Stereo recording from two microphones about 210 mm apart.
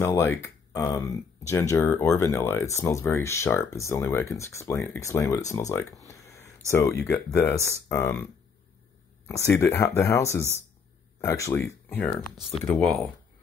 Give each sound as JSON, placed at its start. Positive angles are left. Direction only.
{"t": 0.0, "sound": "speech", "side_deg": 15}
{"t": 6.0, "sound": "a sound", "side_deg": 15}
{"t": 7.1, "sound": "speech", "side_deg": 10}
{"t": 9.6, "sound": "speech", "side_deg": 10}
{"t": 12.4, "sound": "speech", "side_deg": 0}